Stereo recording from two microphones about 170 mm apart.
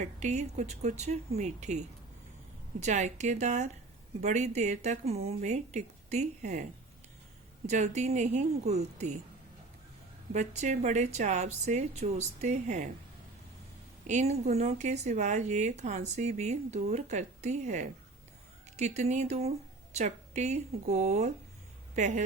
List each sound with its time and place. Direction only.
0.0 s speech: 45° right (ahead or behind)
2.8 s speech: 45° right (ahead or behind)
7.7 s speech: 40° right (ahead or behind)
10.3 s speech: 40° right (ahead or behind)
14.1 s a woman's voice: 40° right (ahead or behind)